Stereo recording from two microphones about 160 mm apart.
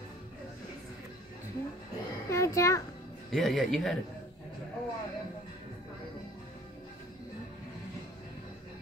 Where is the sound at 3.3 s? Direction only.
5° left (ahead or behind).